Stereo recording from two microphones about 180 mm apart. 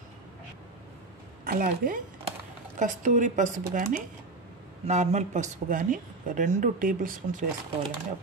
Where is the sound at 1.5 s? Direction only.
50° right (ahead or behind).